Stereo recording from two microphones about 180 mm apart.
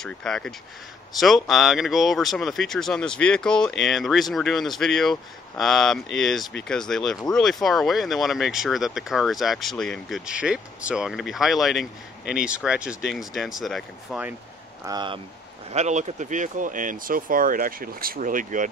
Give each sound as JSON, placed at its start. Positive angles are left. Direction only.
{"t": 0.0, "sound": "speech", "side_deg": 5}
{"t": 14.9, "sound": "speech", "side_deg": -25}
{"t": 15.7, "sound": "speech", "side_deg": -40}